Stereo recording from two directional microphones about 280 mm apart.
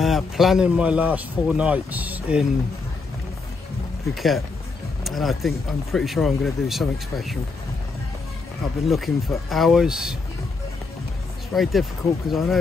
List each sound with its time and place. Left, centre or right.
0.0 s speech: centre
4.1 s speech: centre
8.8 s speech: centre
11.5 s speech: centre